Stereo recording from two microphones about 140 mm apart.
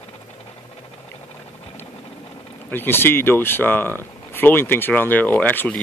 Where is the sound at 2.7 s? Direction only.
15° left (ahead or behind).